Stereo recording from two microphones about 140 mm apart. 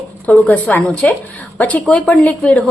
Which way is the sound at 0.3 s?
10° left (ahead or behind).